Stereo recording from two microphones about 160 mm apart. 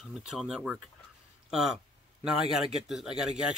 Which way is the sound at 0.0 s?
Centre (ahead or behind).